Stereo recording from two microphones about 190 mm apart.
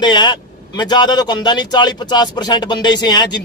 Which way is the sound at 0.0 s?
25° left (ahead or behind).